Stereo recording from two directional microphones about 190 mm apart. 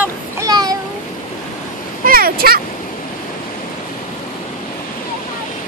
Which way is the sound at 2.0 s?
50° right (ahead or behind).